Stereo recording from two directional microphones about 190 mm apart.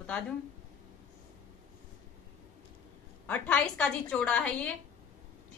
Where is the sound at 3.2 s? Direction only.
10° left (ahead or behind).